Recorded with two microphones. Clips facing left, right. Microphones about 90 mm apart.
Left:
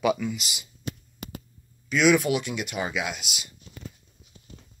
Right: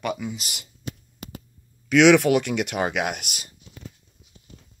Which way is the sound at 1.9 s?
75° right (ahead or behind).